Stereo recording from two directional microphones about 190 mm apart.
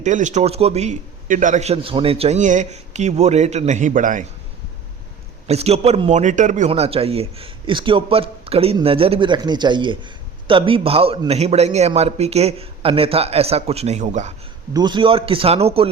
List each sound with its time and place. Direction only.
0.0 s speech: 40° right (ahead or behind)
5.5 s speech: 35° right (ahead or behind)
6.7 s speech: 30° right (ahead or behind)
14.7 s a man's voice: 20° right (ahead or behind)